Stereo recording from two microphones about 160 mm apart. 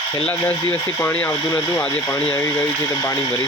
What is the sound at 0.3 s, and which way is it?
Speech, 15° left (ahead or behind).